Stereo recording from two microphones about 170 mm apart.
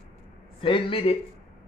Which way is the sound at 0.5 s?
30° left (ahead or behind).